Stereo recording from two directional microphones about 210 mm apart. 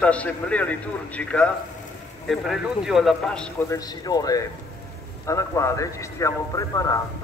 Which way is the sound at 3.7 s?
20° left (ahead or behind).